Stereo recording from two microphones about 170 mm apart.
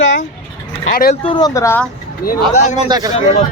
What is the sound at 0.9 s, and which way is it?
Speech, 60° left (ahead or behind).